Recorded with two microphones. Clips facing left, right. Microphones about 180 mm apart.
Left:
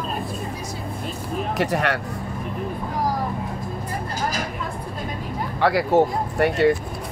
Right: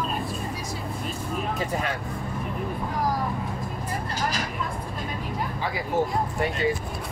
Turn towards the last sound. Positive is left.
turn(degrees=70)  # may be behind; listen again after turning